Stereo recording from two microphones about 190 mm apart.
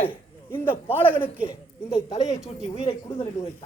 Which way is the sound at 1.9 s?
35° left (ahead or behind).